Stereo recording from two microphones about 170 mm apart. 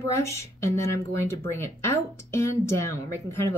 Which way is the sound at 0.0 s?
15° left (ahead or behind).